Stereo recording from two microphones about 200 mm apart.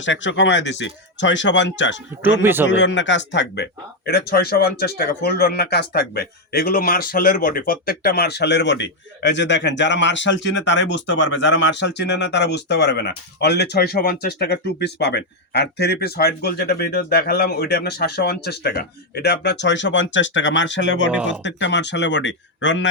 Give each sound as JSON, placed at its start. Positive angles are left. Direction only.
{"t": 0.0, "sound": "speech", "side_deg": 65}
{"t": 2.4, "sound": "speech", "side_deg": -10}
{"t": 2.6, "sound": "speech", "side_deg": 65}